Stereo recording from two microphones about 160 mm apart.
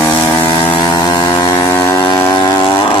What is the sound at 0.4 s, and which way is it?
Chainsaw, 30° left (ahead or behind).